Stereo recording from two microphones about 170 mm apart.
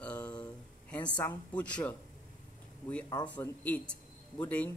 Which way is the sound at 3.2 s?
10° left (ahead or behind).